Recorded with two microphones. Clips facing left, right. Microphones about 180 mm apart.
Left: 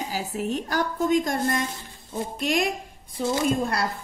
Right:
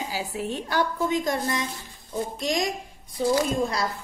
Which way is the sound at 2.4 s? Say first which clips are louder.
Left 4 dB; 60° left (ahead or behind).